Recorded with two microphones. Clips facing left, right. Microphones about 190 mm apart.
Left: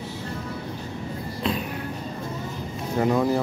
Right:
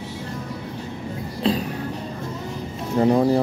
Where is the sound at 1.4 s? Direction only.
35° right (ahead or behind).